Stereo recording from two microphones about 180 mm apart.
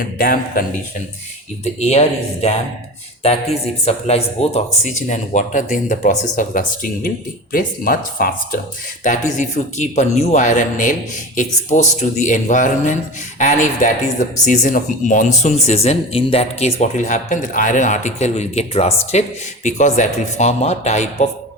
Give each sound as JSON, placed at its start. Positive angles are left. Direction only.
{"t": 0.2, "sound": "a man's voice", "side_deg": 50}
{"t": 1.8, "sound": "a man's voice", "side_deg": 35}